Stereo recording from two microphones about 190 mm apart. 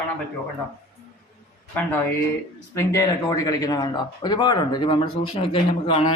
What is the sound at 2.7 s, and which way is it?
Speech, 15° left (ahead or behind).